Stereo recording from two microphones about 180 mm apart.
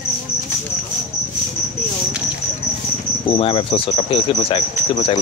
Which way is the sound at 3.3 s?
30° left (ahead or behind).